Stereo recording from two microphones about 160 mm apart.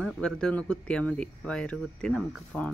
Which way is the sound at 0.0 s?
5° left (ahead or behind).